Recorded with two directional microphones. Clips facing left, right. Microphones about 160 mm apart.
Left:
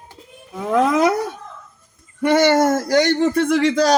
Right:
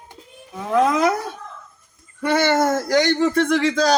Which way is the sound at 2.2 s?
25° left (ahead or behind).